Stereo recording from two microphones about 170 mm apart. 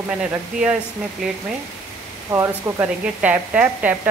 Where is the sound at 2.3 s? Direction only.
15° right (ahead or behind).